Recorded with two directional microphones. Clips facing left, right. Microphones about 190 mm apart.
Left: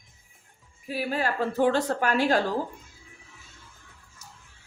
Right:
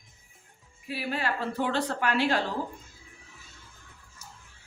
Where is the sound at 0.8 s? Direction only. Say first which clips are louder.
Left 3 dB; 45° left (ahead or behind).